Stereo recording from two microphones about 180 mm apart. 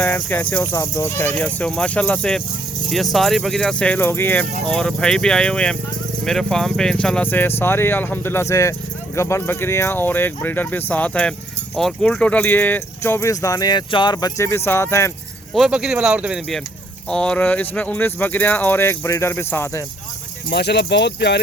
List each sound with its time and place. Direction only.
0.0 s speech: 10° left (ahead or behind)
15.5 s speech: centre (ahead or behind)
17.1 s speech: 5° left (ahead or behind)
20.5 s speech: 70° left (ahead or behind)